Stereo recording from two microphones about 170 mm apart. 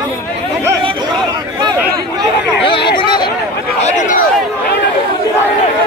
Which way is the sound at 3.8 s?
55° left (ahead or behind).